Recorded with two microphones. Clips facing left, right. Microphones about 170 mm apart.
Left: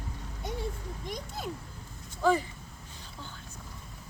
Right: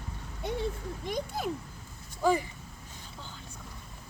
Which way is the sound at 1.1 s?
60° right (ahead or behind).